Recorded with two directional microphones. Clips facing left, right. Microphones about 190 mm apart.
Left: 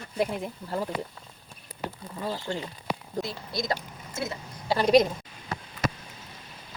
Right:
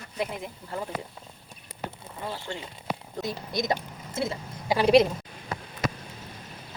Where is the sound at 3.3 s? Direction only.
20° right (ahead or behind).